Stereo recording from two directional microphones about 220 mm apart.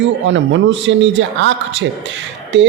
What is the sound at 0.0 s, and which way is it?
A man's voice, 55° right (ahead or behind).